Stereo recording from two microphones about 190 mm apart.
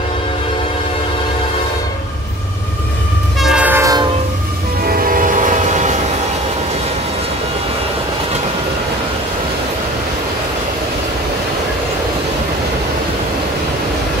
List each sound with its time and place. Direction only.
3.3 s train: 5° right (ahead or behind)
4.8 s train: 50° right (ahead or behind)